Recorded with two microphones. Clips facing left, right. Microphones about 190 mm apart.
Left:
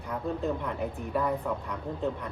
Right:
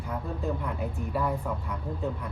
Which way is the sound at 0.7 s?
5° right (ahead or behind).